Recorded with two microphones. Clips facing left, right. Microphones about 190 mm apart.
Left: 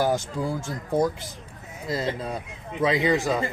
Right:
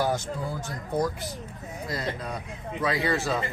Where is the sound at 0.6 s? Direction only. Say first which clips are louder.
Left 4 dB; 25° left (ahead or behind).